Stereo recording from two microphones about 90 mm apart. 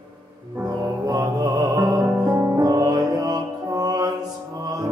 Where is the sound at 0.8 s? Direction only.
45° right (ahead or behind).